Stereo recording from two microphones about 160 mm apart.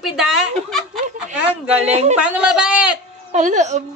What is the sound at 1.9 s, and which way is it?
Speech, 45° right (ahead or behind).